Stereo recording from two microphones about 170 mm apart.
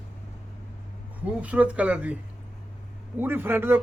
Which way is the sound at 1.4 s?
10° right (ahead or behind).